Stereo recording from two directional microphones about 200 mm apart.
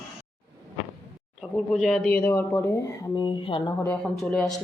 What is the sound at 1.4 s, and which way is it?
Speech, centre (ahead or behind).